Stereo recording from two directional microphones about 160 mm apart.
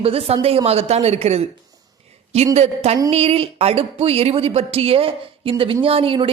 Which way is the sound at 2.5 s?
40° right (ahead or behind).